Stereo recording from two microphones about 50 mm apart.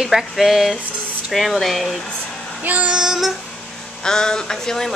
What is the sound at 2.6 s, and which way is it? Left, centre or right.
Child singing, right.